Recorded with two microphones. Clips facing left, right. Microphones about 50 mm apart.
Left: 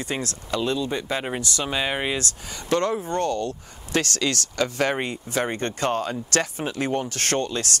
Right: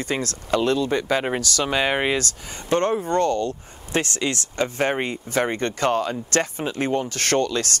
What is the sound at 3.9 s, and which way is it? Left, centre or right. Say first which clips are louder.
Speech: even; right.